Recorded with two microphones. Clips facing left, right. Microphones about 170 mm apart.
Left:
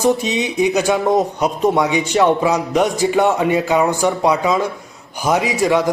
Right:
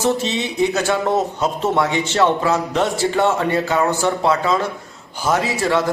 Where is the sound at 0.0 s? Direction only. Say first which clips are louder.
Left 3 dB; 15° left (ahead or behind).